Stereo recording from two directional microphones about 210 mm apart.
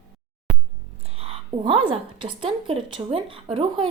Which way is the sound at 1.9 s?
25° right (ahead or behind).